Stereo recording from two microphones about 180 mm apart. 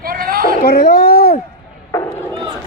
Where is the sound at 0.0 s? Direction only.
55° right (ahead or behind).